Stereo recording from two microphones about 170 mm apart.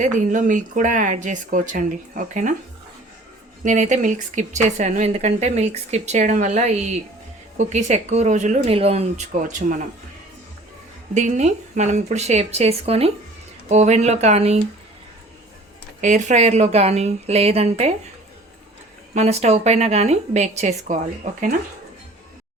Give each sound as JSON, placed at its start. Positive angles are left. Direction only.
{"t": 0.0, "sound": "a woman's voice", "side_deg": -45}
{"t": 3.6, "sound": "a woman's voice", "side_deg": -45}
{"t": 11.1, "sound": "a woman's voice", "side_deg": -45}
{"t": 16.0, "sound": "a woman's voice", "side_deg": -45}
{"t": 19.1, "sound": "a woman's voice", "side_deg": -40}